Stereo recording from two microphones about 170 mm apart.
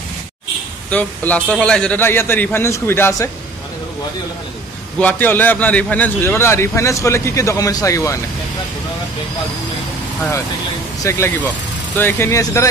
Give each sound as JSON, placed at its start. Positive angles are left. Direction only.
{"t": 0.8, "sound": "a man's voice", "side_deg": 10}
{"t": 5.0, "sound": "a man's voice", "side_deg": 10}
{"t": 11.0, "sound": "a man's voice", "side_deg": 15}